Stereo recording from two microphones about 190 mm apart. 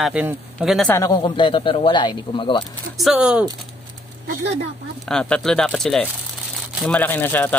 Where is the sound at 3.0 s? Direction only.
5° right (ahead or behind).